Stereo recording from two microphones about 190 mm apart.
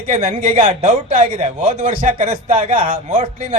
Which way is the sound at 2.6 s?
35° right (ahead or behind).